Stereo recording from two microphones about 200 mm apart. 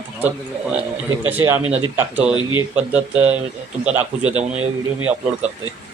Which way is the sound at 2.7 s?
5° right (ahead or behind).